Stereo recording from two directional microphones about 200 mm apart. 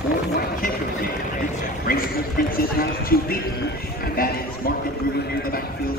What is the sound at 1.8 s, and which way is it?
Speech, 45° left (ahead or behind).